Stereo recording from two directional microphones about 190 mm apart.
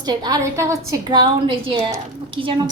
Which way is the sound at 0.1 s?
15° right (ahead or behind).